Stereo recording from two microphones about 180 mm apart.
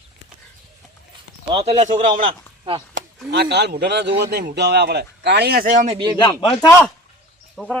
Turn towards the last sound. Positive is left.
turn(degrees=5)  # may be behind; listen again after turning